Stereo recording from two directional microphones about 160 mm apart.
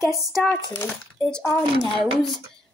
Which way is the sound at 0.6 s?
25° left (ahead or behind).